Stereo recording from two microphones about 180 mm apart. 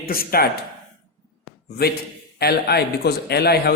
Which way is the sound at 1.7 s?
60° left (ahead or behind).